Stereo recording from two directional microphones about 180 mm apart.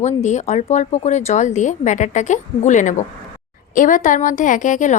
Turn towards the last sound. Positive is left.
turn(degrees=45)  # may be behind; listen again after turning